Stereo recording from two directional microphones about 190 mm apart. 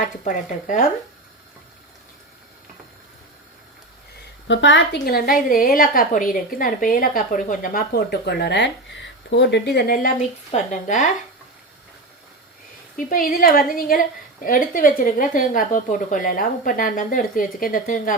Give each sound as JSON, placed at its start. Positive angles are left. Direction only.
{"t": 0.0, "sound": "speech", "side_deg": 40}
{"t": 4.4, "sound": "a woman's voice", "side_deg": 75}
{"t": 13.0, "sound": "a woman's voice", "side_deg": 45}